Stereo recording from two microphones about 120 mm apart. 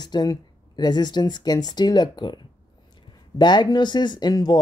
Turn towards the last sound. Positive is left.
turn(degrees=35)  # may be behind; listen again after turning